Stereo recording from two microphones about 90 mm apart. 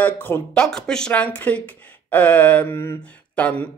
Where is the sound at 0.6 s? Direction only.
5° left (ahead or behind).